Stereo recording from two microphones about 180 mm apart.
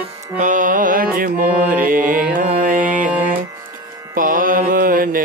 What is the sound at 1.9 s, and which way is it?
Music, 50° right (ahead or behind).